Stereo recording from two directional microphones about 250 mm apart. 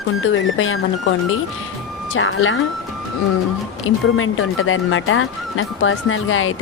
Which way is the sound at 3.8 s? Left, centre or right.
Left.